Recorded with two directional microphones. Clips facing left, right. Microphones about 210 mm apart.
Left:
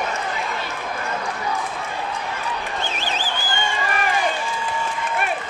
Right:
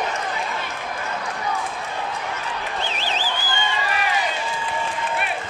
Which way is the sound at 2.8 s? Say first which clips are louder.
Even; 50° left (ahead or behind).